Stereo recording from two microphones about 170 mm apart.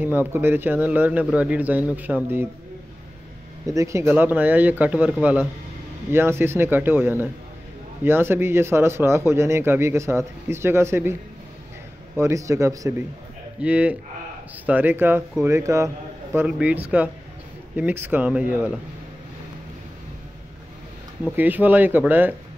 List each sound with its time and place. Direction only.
0.3 s speech: 15° right (ahead or behind)
3.6 s speech: 20° right (ahead or behind)
12.2 s speech: 15° right (ahead or behind)
21.2 s speech: 10° right (ahead or behind)